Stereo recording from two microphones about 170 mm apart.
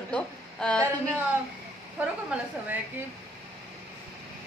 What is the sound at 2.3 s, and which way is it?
Speech, 5° right (ahead or behind).